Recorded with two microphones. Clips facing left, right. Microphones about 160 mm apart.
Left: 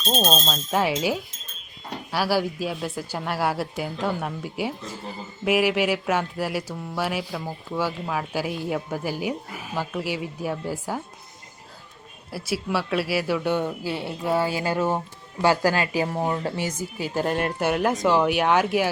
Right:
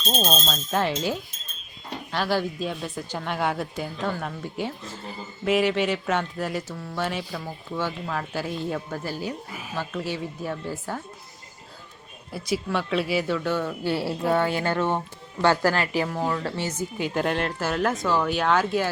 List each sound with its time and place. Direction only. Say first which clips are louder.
0.4 s speech: left 2 dB; 5° left (ahead or behind)
12.3 s speech: even; 5° left (ahead or behind)
13.8 s speech: right 3 dB; centre (ahead or behind); by 16.0 s 15° left (ahead or behind)
16.0 s speech: left 1 dB; 25° left (ahead or behind)
16.6 s speech: even; 10° left (ahead or behind)